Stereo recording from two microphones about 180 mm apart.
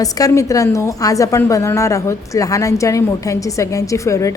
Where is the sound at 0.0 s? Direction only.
20° left (ahead or behind).